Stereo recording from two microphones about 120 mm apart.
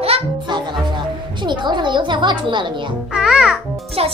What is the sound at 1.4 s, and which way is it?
A woman's voice, 40° right (ahead or behind).